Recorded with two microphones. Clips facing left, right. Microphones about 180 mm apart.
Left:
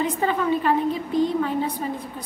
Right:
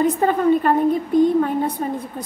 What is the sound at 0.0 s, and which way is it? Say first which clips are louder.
A woman's voice: right 6 dB; 45° right (ahead or behind).